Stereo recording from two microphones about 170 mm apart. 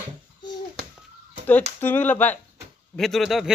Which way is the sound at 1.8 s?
10° left (ahead or behind).